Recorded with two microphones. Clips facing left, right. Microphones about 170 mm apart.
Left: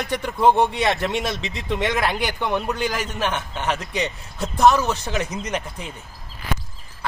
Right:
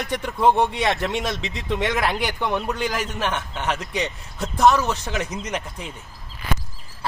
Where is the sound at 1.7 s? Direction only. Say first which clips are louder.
Left 1 dB; 25° left (ahead or behind).